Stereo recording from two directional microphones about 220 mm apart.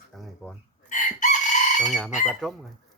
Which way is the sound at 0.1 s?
Centre (ahead or behind).